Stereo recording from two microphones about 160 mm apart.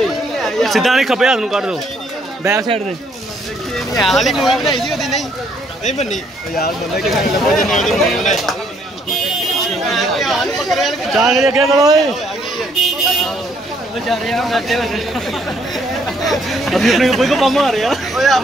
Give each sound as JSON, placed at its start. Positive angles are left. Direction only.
{"t": 0.0, "sound": "speech", "side_deg": 0}
{"t": 2.4, "sound": "a man's voice", "side_deg": -15}
{"t": 4.0, "sound": "speech", "side_deg": 0}
{"t": 5.9, "sound": "speech", "side_deg": 50}
{"t": 7.0, "sound": "speech", "side_deg": 0}
{"t": 9.7, "sound": "speech", "side_deg": 0}
{"t": 11.7, "sound": "a man's voice", "side_deg": -20}
{"t": 14.0, "sound": "speech", "side_deg": 0}